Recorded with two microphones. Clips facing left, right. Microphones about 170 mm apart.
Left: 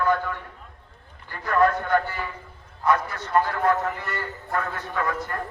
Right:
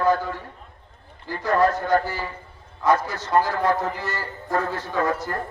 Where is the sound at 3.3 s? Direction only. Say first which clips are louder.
Right 2 dB; 90° right.